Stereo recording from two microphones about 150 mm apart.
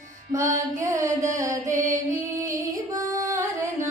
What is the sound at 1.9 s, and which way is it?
Music, 20° right (ahead or behind).